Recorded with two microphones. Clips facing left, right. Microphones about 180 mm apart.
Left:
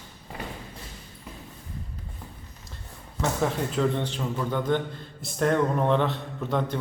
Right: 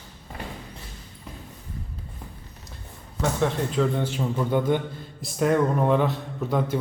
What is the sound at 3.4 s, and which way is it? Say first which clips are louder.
A man's voice: right 2 dB; centre (ahead or behind).